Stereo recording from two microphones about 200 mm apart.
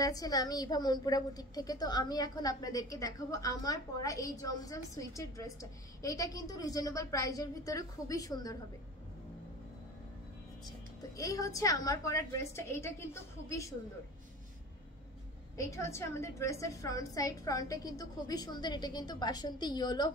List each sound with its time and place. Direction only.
0.0 s a woman's voice: 20° left (ahead or behind)
11.1 s a woman's voice: 15° left (ahead or behind)
15.5 s a woman's voice: 15° left (ahead or behind)